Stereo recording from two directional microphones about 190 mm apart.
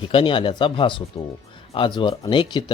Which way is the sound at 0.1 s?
25° left (ahead or behind).